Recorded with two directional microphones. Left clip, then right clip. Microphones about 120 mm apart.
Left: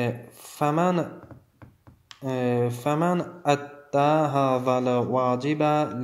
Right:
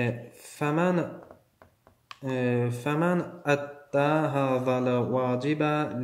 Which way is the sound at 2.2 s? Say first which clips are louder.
Left 3 dB; 20° left (ahead or behind).